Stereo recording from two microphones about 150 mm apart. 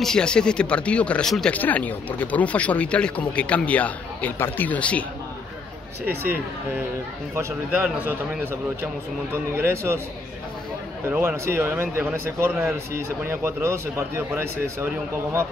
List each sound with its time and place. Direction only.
0.0 s speech: 5° left (ahead or behind)
6.0 s speech: 15° right (ahead or behind)
7.7 s speech: 10° right (ahead or behind)
11.1 s speech: 15° right (ahead or behind)